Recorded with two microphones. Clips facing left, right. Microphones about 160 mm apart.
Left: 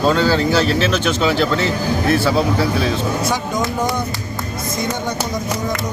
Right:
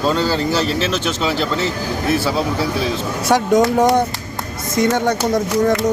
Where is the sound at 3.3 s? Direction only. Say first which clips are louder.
Right 7 dB; 75° right (ahead or behind).